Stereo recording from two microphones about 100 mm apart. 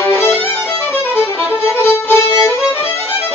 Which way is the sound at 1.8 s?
25° left (ahead or behind).